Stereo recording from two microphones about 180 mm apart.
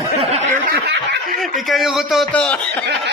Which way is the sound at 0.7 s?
70° right (ahead or behind).